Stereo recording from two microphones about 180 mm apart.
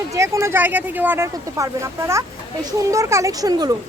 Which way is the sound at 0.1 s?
15° right (ahead or behind).